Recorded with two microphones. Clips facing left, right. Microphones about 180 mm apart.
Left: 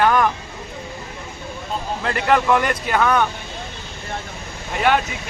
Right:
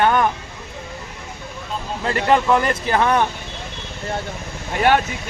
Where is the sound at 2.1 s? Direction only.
30° right (ahead or behind).